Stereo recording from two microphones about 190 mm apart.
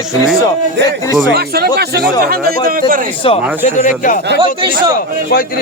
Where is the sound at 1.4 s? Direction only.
55° right (ahead or behind).